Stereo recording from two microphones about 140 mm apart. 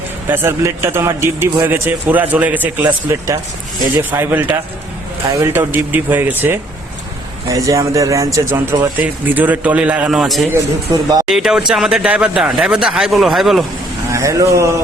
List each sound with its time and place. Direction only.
0.3 s a man's voice: 15° right (ahead or behind)
8.6 s a man's voice: 10° right (ahead or behind)
10.5 s speech: 25° right (ahead or behind)
11.3 s speech: 5° right (ahead or behind)
14.1 s speech: 20° right (ahead or behind)